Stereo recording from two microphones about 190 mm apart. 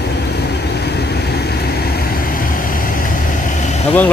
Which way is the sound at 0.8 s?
60° left (ahead or behind).